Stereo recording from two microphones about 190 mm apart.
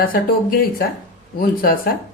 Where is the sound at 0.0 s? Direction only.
50° left (ahead or behind).